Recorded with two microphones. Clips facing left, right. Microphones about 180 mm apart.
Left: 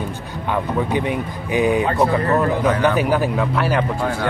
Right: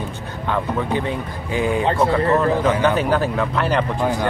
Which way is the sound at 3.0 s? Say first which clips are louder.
Left 1 dB; 10° left (ahead or behind).